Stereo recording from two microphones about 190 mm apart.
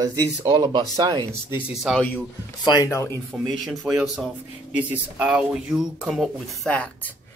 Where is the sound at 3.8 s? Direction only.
5° right (ahead or behind).